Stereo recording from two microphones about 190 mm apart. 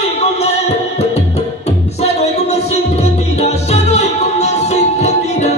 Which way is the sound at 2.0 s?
35° left (ahead or behind).